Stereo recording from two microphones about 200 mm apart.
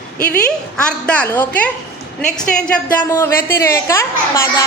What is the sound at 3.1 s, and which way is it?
A woman's voice, 15° left (ahead or behind).